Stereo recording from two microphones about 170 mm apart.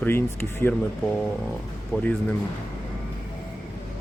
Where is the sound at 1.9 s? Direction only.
10° left (ahead or behind).